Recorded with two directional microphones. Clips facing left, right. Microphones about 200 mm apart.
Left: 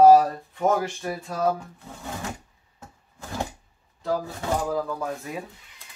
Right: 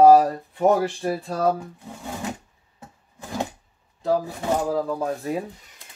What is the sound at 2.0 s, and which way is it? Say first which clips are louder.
Drawer open or close: right 3 dB; 15° right (ahead or behind).